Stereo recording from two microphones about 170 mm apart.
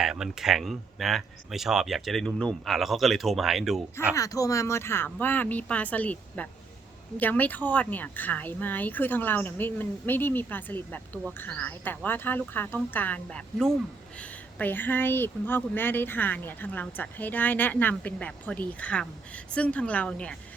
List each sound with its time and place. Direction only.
0.0 s speech: 5° right (ahead or behind)
4.1 s speech: 20° left (ahead or behind)